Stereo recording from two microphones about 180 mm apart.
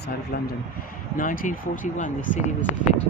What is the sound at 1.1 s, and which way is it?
Speech, 45° left (ahead or behind).